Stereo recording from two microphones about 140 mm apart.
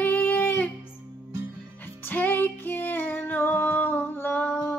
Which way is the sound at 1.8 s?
15° left (ahead or behind).